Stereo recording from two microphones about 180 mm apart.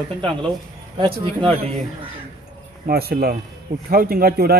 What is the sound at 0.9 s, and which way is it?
Speech, 30° right (ahead or behind).